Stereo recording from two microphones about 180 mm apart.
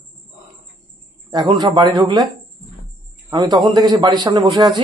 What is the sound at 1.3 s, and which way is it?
A man's voice, 20° right (ahead or behind).